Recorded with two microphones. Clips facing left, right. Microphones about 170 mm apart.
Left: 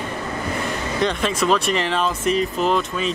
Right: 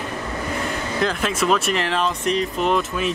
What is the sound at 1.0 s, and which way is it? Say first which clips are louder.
Speech: left 1 dB; centre (ahead or behind).